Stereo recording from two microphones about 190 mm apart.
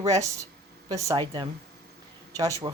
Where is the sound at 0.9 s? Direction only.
20° right (ahead or behind).